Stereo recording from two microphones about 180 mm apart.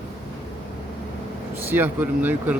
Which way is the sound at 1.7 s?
10° right (ahead or behind).